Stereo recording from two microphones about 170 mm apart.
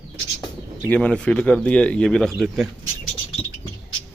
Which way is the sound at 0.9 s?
5° left (ahead or behind).